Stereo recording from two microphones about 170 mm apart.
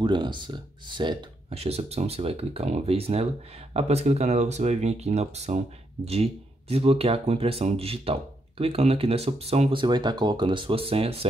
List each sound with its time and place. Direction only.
0.0 s speech: 25° right (ahead or behind)